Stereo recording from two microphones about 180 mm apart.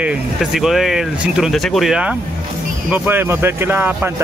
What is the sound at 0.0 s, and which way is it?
Speech, centre (ahead or behind).